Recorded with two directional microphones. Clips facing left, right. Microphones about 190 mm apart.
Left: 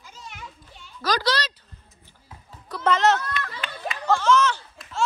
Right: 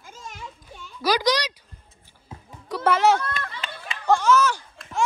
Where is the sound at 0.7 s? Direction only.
50° right (ahead or behind).